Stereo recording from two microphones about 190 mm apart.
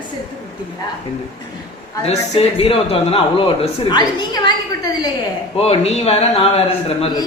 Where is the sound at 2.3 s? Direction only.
30° left (ahead or behind).